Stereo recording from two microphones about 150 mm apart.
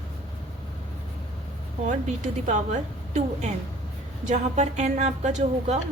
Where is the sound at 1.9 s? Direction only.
55° right (ahead or behind).